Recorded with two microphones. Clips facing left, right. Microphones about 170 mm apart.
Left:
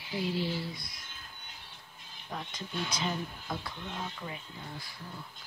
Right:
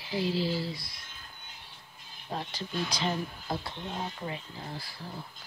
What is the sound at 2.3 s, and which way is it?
Speech, 35° right (ahead or behind).